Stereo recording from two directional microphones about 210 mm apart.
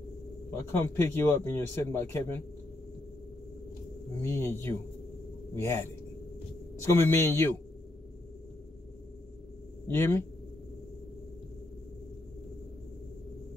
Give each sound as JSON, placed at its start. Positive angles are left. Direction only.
{"t": 0.5, "sound": "speech", "side_deg": 10}
{"t": 4.2, "sound": "speech", "side_deg": 10}
{"t": 7.1, "sound": "speech", "side_deg": 10}
{"t": 9.8, "sound": "speech", "side_deg": 10}